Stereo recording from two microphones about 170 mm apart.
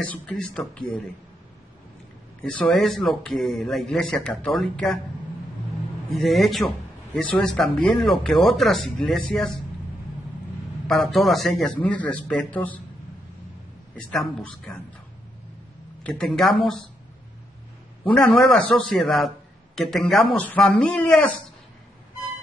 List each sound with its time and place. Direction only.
0.1 s speech: 10° left (ahead or behind)
2.4 s speech: 5° left (ahead or behind)
6.2 s speech: centre (ahead or behind)
10.9 s speech: centre (ahead or behind)
13.9 s speech: 5° left (ahead or behind)
16.0 s speech: 5° left (ahead or behind)
18.0 s speech: centre (ahead or behind)